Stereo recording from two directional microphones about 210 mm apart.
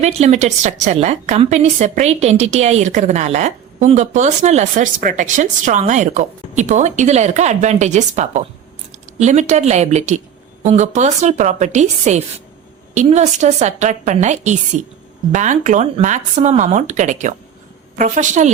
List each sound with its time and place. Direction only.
0.0 s a woman's voice: 30° right (ahead or behind)